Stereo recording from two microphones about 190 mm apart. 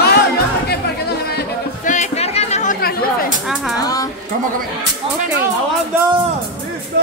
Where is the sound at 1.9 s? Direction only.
35° left (ahead or behind); by 3.1 s 50° left (ahead or behind).